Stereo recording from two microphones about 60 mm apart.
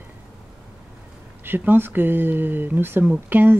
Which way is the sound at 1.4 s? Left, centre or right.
Right.